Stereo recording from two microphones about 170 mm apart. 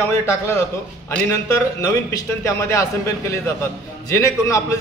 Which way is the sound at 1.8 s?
20° left (ahead or behind).